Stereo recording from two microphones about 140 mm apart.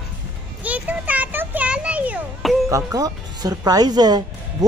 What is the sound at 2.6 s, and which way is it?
Speech, 25° right (ahead or behind).